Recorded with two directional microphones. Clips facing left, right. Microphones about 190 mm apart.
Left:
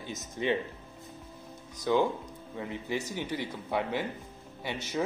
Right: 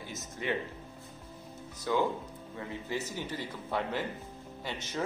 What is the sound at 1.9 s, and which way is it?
A man's voice, 20° left (ahead or behind).